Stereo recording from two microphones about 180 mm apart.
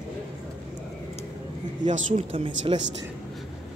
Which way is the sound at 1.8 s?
45° right (ahead or behind).